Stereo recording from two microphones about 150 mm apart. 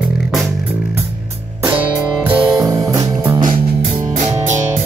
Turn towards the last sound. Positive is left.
turn(degrees=-25)  # may be behind; listen again after turning